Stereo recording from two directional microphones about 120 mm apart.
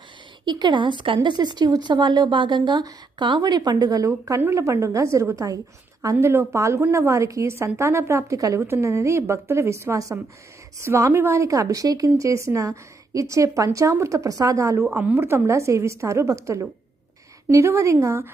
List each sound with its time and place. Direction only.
0.4 s a woman's voice: 40° right (ahead or behind); by 18.3 s 25° right (ahead or behind)